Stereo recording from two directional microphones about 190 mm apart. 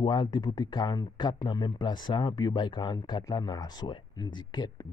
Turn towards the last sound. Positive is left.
turn(degrees=20)  # may be behind; listen again after turning